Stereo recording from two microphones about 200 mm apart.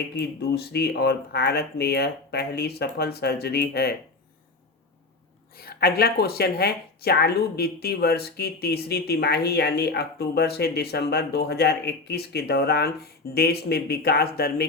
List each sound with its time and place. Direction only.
0.2 s speech: 55° left (ahead or behind)
5.5 s speech: 50° left (ahead or behind)